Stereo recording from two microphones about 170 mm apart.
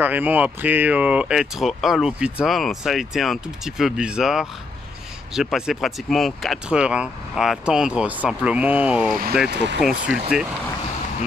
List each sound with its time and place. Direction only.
0.0 s speech: 10° right (ahead or behind)
9.5 s speech: 90° right
9.8 s speech: 5° right (ahead or behind)